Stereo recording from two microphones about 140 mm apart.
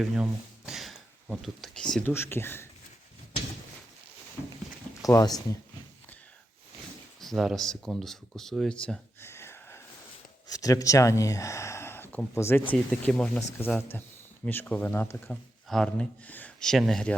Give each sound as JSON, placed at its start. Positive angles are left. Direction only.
{"t": 0.0, "sound": "speech", "side_deg": -5}
{"t": 2.1, "sound": "speech", "side_deg": 15}
{"t": 5.0, "sound": "speech", "side_deg": 25}
{"t": 7.2, "sound": "speech", "side_deg": 0}
{"t": 9.2, "sound": "wheeze", "side_deg": 15}
{"t": 10.5, "sound": "speech", "side_deg": 25}
{"t": 12.9, "sound": "speech", "side_deg": 5}